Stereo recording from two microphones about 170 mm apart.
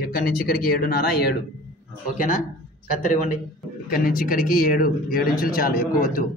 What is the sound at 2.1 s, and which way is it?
A man's voice, 50° left (ahead or behind).